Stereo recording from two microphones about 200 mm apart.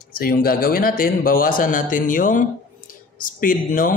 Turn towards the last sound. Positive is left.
turn(degrees=45)  # may be behind; listen again after turning